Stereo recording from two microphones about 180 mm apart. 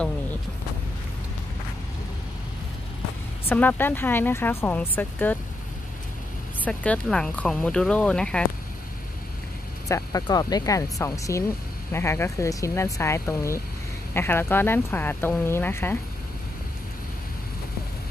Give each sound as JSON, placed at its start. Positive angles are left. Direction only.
{"t": 3.4, "sound": "speech", "side_deg": 10}
{"t": 6.6, "sound": "speech", "side_deg": 5}
{"t": 9.8, "sound": "speech", "side_deg": 20}